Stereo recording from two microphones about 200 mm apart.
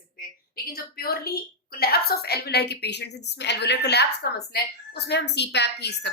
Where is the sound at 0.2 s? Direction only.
45° left (ahead or behind).